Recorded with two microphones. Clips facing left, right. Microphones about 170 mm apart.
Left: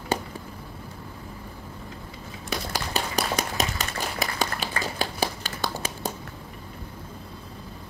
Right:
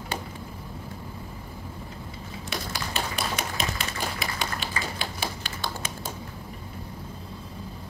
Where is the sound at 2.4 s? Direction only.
40° left (ahead or behind).